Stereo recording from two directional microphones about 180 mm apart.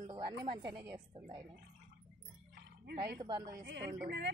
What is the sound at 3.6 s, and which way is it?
Speech, 65° right (ahead or behind).